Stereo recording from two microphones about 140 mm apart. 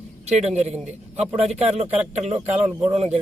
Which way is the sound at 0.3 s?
55° right (ahead or behind).